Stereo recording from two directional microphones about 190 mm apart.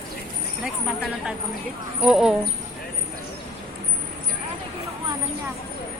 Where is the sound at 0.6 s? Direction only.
Centre (ahead or behind).